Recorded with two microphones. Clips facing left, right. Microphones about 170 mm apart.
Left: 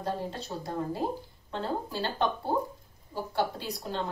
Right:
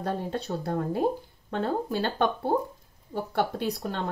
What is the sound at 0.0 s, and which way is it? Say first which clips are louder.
A woman's voice: right 3 dB; 55° right (ahead or behind).